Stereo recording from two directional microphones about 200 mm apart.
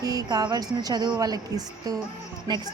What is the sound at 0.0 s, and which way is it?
A woman's voice, 20° right (ahead or behind).